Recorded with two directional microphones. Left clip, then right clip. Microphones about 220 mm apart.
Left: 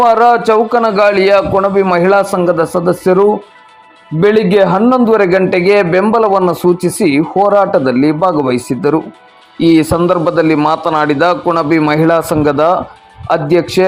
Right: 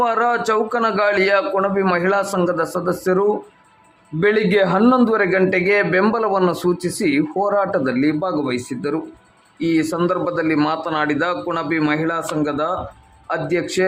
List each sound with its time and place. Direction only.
0.0 s speech: 20° left (ahead or behind)
4.8 s a man's voice: 5° left (ahead or behind)
5.0 s speech: 20° left (ahead or behind)